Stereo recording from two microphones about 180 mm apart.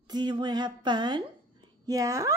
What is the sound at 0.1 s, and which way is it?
A woman's voice, 25° right (ahead or behind).